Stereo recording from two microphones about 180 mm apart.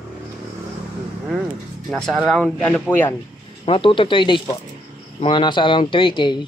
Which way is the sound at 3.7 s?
30° left (ahead or behind).